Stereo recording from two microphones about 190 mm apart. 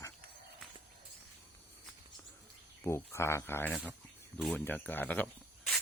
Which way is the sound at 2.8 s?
15° left (ahead or behind).